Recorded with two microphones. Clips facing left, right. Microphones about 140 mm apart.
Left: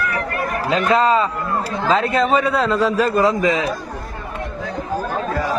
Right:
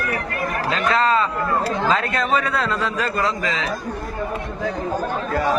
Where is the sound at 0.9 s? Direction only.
10° left (ahead or behind).